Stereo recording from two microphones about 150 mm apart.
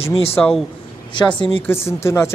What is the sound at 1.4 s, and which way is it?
Speech, 35° left (ahead or behind).